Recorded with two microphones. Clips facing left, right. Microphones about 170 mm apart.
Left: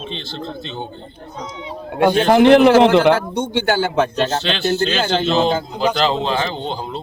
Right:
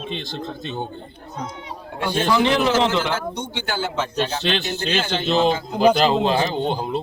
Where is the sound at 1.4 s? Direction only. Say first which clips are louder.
Even; 60° right (ahead or behind).